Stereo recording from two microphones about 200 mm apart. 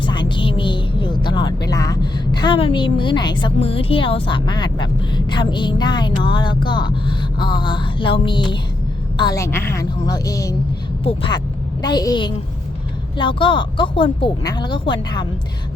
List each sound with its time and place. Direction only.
0.0 s a sound: 25° left (ahead or behind)
5.3 s a woman's voice: 25° left (ahead or behind)
11.0 s speech: 25° left (ahead or behind)